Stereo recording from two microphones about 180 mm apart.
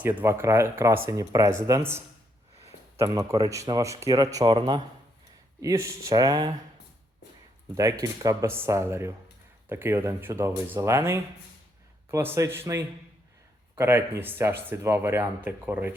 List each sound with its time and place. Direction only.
0.0 s speech: 10° right (ahead or behind)
8.0 s speech: 20° right (ahead or behind)